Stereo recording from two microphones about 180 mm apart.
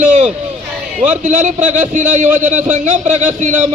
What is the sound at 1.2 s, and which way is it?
A man's voice, 40° right (ahead or behind).